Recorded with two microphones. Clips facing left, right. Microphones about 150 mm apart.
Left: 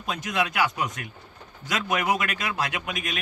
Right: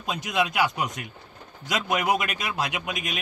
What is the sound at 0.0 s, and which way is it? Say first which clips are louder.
Speech: right 1 dB; 15° right (ahead or behind).